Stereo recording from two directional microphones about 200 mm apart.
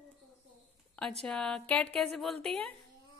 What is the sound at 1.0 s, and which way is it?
A woman's voice, 5° left (ahead or behind).